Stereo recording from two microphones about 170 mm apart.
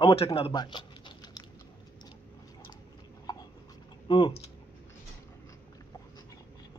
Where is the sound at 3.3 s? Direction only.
20° left (ahead or behind).